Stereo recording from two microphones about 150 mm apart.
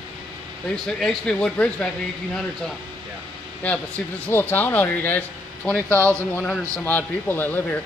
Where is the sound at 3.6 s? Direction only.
10° left (ahead or behind).